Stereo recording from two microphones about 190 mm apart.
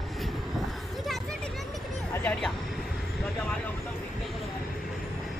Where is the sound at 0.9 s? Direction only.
Centre (ahead or behind).